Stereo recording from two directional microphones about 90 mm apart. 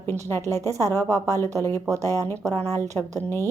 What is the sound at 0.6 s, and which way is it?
Speech, 35° right (ahead or behind).